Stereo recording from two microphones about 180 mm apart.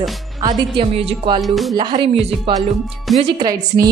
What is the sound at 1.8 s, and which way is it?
Speech, 25° right (ahead or behind).